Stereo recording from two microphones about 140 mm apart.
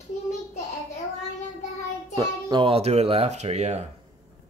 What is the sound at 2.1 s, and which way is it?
A child's voice, 35° right (ahead or behind).